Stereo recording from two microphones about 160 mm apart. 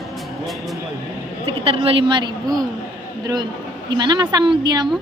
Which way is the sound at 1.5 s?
35° right (ahead or behind).